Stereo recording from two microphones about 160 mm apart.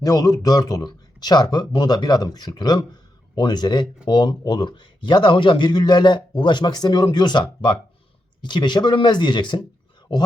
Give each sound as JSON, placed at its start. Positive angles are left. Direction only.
{"t": 0.0, "sound": "speech", "side_deg": 25}